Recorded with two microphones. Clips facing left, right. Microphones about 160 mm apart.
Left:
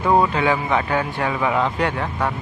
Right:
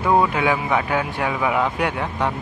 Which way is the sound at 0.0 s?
Centre (ahead or behind).